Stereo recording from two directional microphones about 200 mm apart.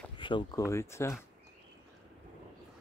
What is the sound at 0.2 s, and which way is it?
Speech, 25° left (ahead or behind).